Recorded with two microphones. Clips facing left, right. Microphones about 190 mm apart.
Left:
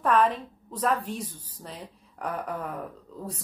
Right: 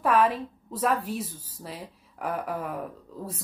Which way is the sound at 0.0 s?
5° right (ahead or behind).